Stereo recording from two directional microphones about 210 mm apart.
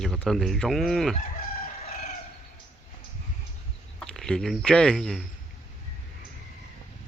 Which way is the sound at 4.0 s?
5° left (ahead or behind).